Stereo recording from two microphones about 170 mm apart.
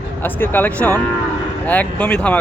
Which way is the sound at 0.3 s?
10° left (ahead or behind).